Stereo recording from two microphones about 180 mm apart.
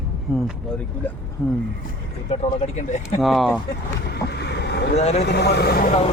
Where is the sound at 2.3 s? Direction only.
35° left (ahead or behind).